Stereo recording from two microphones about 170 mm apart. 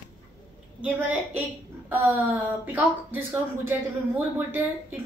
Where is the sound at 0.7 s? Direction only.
10° right (ahead or behind).